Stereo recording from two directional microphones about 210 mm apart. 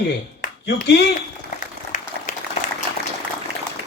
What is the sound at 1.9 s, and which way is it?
Applause, 35° left (ahead or behind).